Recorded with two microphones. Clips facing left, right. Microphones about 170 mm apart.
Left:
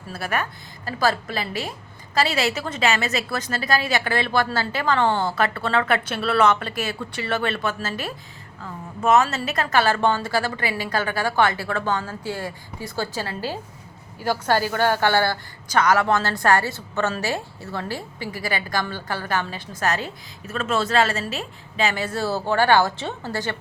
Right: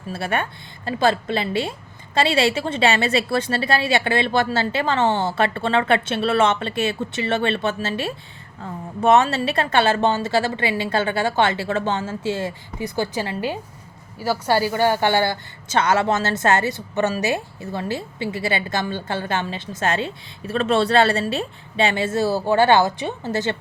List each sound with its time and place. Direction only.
0.1 s a woman's voice: 25° right (ahead or behind)